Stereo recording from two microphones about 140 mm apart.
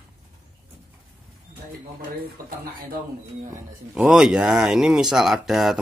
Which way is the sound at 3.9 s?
5° right (ahead or behind).